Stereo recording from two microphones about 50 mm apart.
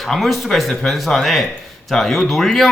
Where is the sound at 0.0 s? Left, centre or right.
Centre.